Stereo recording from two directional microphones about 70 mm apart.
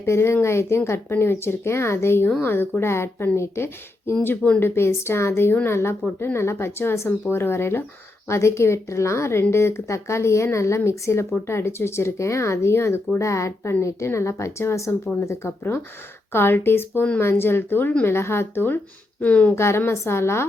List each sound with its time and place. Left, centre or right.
0.0 s speech: left
19.2 s speech: centre
19.5 s speech: left